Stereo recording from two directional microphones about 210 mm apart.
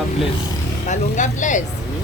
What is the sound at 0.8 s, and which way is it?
Speech, 35° left (ahead or behind).